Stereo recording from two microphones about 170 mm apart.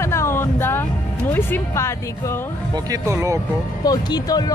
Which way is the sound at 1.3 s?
10° left (ahead or behind).